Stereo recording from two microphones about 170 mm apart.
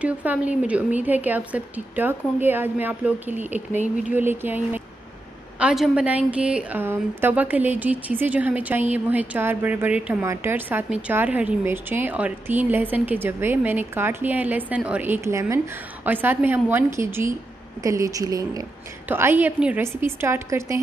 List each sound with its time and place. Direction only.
0.0 s speech: 10° right (ahead or behind)